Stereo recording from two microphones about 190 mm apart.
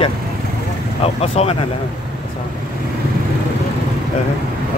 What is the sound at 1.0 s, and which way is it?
Speech, 30° left (ahead or behind).